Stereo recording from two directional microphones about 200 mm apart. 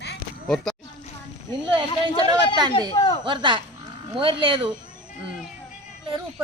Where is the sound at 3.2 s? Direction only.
25° right (ahead or behind).